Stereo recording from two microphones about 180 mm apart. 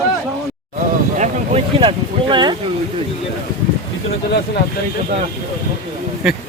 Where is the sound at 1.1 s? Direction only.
40° right (ahead or behind).